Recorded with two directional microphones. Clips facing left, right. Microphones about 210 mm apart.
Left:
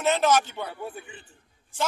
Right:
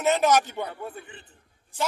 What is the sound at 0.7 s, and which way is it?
Speech, 10° left (ahead or behind).